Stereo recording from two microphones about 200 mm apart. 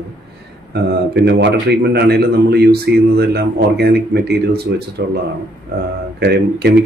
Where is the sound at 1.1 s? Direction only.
55° right (ahead or behind).